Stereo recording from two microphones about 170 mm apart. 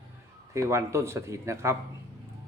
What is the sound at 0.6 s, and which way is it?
A man's voice, 15° right (ahead or behind).